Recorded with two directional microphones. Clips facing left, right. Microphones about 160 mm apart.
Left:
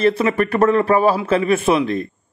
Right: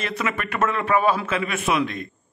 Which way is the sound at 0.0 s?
35° left (ahead or behind).